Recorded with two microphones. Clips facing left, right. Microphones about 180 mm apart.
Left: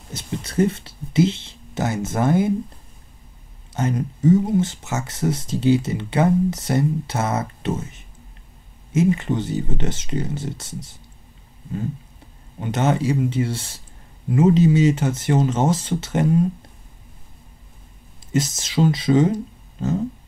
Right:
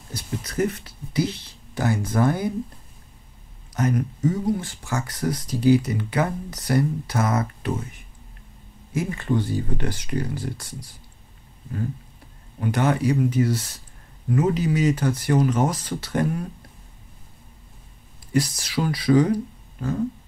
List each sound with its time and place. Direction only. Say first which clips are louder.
0.1 s speech: left 3 dB; 25° left (ahead or behind)
3.7 s speech: even; 25° left (ahead or behind)
12.5 s speech: left 1 dB; 25° left (ahead or behind)
18.3 s speech: left 1 dB; 20° left (ahead or behind)